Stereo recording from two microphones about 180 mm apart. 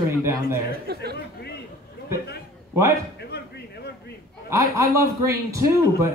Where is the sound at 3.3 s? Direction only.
60° left (ahead or behind).